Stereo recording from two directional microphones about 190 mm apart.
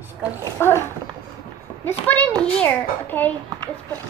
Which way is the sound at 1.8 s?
10° left (ahead or behind).